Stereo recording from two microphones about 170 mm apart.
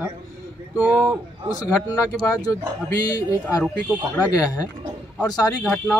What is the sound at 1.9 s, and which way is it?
Speech, 20° left (ahead or behind).